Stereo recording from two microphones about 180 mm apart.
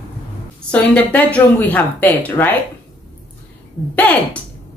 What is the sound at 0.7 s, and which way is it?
A woman's voice, 10° left (ahead or behind).